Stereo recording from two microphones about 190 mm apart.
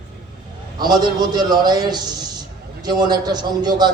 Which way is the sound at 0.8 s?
20° right (ahead or behind).